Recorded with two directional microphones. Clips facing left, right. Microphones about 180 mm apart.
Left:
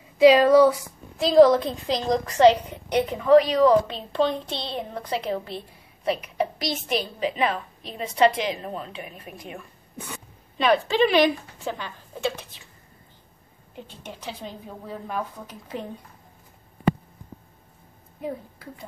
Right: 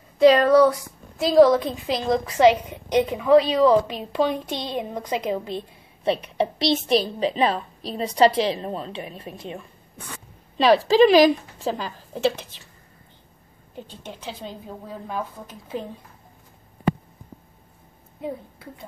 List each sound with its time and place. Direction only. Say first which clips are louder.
0.2 s a woman's voice: even; 5° left (ahead or behind); by 5.6 s 15° right (ahead or behind)
6.0 s a woman's voice: right 3 dB; 30° right (ahead or behind)
9.9 s a sound: left 3 dB; 10° left (ahead or behind)
10.6 s a woman's voice: right 5 dB; 35° right (ahead or behind)
15.0 s a woman's voice: right 1 dB; centre (ahead or behind)
18.2 s a woman's voice: right 1 dB; centre (ahead or behind)